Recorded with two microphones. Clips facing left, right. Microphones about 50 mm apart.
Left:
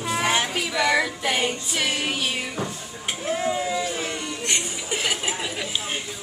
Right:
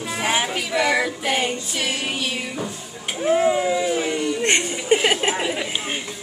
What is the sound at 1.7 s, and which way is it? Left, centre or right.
Music, centre.